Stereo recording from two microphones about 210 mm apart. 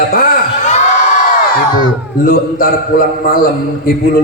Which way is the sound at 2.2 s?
40° left (ahead or behind).